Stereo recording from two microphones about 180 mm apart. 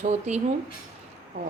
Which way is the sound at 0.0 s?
40° right (ahead or behind).